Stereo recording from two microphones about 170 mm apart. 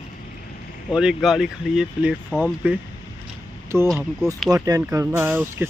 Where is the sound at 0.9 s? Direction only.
5° right (ahead or behind).